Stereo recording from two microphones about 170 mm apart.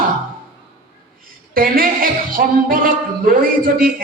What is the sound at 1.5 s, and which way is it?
A man's voice, 55° right (ahead or behind).